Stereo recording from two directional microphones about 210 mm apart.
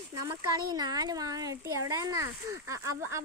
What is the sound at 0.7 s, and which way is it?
A child's voice, 20° right (ahead or behind).